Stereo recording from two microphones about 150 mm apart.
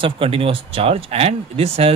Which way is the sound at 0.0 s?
40° right (ahead or behind).